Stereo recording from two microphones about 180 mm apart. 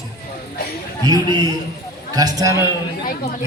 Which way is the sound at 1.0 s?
20° right (ahead or behind).